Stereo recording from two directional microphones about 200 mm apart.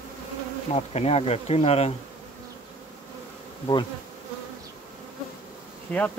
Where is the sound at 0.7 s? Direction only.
30° left (ahead or behind).